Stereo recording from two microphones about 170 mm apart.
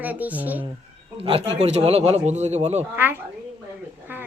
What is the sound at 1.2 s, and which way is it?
Speech, 35° right (ahead or behind).